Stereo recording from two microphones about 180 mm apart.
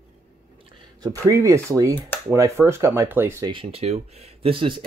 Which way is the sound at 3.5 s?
30° right (ahead or behind).